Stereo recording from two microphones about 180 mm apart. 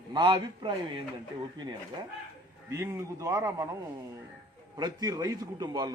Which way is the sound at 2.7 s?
15° right (ahead or behind).